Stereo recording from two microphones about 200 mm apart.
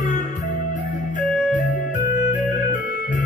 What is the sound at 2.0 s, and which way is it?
Music, 40° left (ahead or behind).